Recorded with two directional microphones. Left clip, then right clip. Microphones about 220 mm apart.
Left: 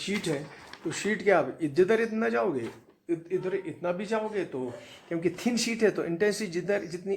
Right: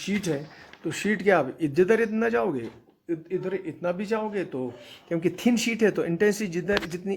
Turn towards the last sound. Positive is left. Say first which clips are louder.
# right 3 dB
turn(degrees=-45)  # may be behind; listen again after turning